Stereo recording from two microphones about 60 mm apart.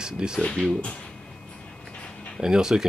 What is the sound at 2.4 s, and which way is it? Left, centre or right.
Speech, centre.